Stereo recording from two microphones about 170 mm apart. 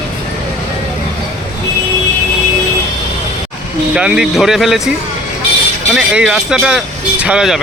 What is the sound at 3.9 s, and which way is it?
Speech, 5° right (ahead or behind).